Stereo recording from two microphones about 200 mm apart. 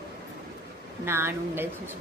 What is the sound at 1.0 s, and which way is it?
Speech, 10° right (ahead or behind).